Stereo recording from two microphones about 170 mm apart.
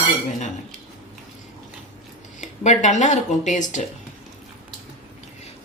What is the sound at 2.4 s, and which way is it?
Speech, 45° left (ahead or behind).